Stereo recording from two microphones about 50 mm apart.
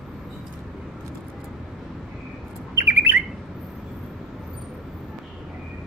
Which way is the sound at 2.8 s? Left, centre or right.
Right.